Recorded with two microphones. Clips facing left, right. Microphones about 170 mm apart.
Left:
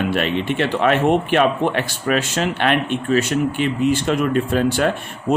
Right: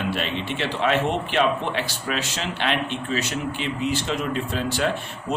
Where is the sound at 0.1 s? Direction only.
55° left (ahead or behind).